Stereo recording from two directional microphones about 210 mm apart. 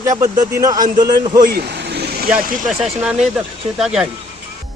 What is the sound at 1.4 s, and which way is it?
Vehicle, 50° right (ahead or behind).